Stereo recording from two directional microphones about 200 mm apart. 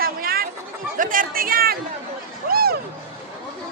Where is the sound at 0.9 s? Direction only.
40° right (ahead or behind).